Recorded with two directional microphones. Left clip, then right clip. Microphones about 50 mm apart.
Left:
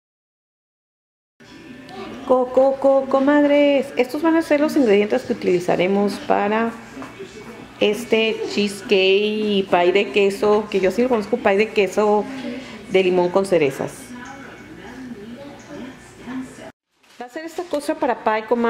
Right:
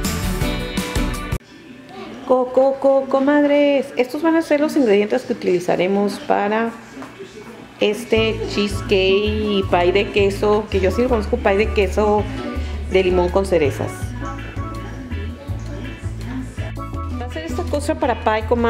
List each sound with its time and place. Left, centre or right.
2.2 s speech: centre
7.8 s speech: centre
17.2 s music: right